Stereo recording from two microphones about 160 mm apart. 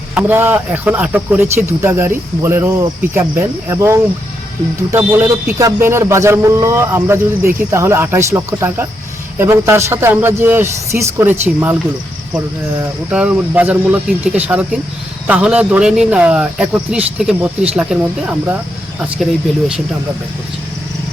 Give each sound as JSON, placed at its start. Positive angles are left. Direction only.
{"t": 0.1, "sound": "speech", "side_deg": -10}
{"t": 13.1, "sound": "speech", "side_deg": -5}
{"t": 19.1, "sound": "speech", "side_deg": -5}